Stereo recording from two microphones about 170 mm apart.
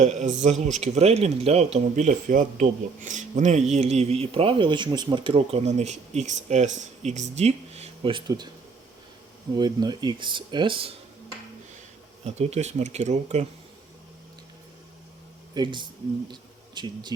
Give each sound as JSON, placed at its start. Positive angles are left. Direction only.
{"t": 0.0, "sound": "speech", "side_deg": -45}
{"t": 9.6, "sound": "speech", "side_deg": -25}
{"t": 12.2, "sound": "speech", "side_deg": -40}
{"t": 15.5, "sound": "speech", "side_deg": -25}
{"t": 16.3, "sound": "a sound", "side_deg": -25}